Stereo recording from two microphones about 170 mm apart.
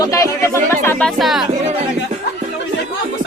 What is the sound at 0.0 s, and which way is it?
Music, 20° left (ahead or behind).